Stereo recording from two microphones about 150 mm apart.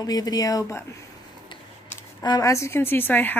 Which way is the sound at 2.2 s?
25° left (ahead or behind).